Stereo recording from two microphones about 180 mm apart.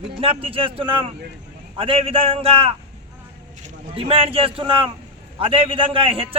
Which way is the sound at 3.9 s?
30° right (ahead or behind).